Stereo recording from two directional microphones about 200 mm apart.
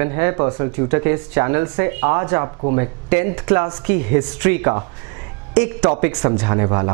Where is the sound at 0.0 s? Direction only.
15° right (ahead or behind).